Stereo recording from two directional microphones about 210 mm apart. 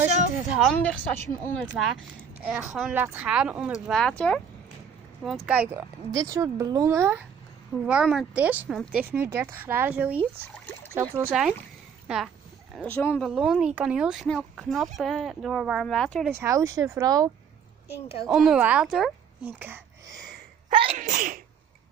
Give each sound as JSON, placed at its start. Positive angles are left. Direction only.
{"t": 0.5, "sound": "speech", "side_deg": 0}
{"t": 12.7, "sound": "speech", "side_deg": 10}
{"t": 13.3, "sound": "speech", "side_deg": -5}
{"t": 16.3, "sound": "speech", "side_deg": -15}
{"t": 18.3, "sound": "speech", "side_deg": -5}
{"t": 20.7, "sound": "sneeze", "side_deg": -35}